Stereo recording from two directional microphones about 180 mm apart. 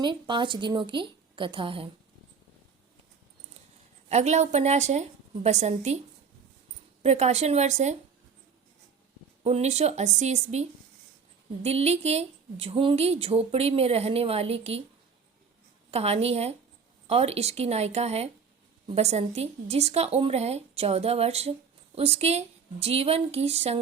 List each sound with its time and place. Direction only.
0.0 s a woman's voice: 25° right (ahead or behind)
4.1 s speech: 40° right (ahead or behind)
7.0 s speech: 35° right (ahead or behind)
9.4 s speech: 35° right (ahead or behind)
15.9 s speech: 35° right (ahead or behind)